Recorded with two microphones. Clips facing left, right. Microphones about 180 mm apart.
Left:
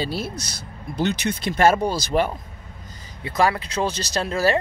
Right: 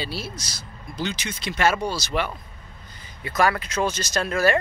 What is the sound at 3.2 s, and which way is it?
Speech, 30° left (ahead or behind).